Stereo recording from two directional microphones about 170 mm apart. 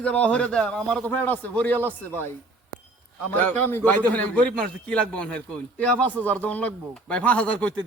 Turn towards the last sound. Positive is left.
turn(degrees=5)  # may be behind; listen again after turning